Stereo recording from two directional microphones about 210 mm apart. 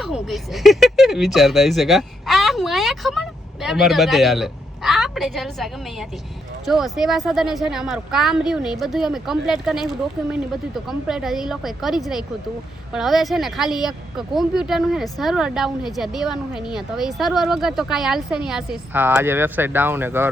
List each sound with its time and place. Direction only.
0.0 s speech: centre (ahead or behind)